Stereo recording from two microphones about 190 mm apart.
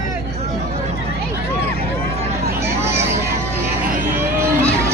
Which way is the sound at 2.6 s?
15° right (ahead or behind).